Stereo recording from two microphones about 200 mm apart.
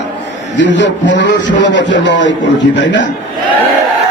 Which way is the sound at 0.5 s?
65° left (ahead or behind).